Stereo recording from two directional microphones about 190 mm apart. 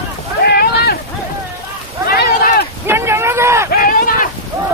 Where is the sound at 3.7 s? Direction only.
50° left (ahead or behind).